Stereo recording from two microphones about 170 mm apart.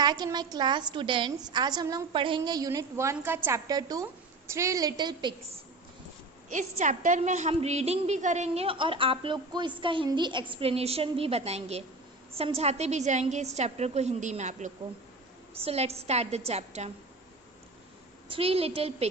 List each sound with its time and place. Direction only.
0.0 s a woman's voice: 25° right (ahead or behind)
6.5 s a woman's voice: 45° right (ahead or behind)
18.3 s a woman's voice: 35° right (ahead or behind)